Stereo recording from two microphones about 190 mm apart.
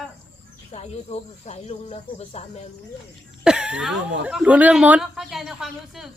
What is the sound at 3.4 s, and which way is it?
A woman's voice, 5° right (ahead or behind).